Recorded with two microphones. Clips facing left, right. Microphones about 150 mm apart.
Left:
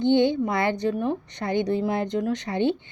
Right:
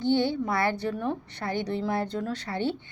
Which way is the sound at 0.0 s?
20° left (ahead or behind).